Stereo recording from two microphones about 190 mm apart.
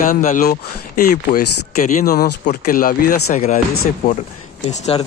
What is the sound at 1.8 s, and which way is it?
Speech, 40° left (ahead or behind).